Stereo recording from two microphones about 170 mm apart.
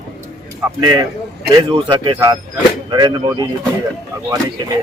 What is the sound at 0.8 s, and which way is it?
Speech, 25° right (ahead or behind).